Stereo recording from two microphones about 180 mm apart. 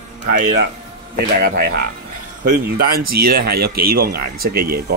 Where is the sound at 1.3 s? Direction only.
65° right (ahead or behind).